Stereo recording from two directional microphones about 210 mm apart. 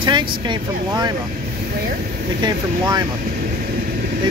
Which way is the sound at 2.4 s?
20° right (ahead or behind).